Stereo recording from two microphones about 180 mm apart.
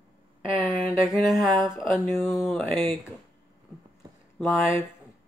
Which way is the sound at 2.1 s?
10° left (ahead or behind).